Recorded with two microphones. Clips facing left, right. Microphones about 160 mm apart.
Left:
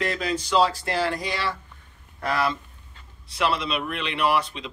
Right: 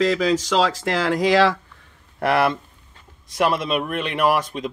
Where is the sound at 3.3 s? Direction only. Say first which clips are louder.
Right 5 dB; 50° right (ahead or behind).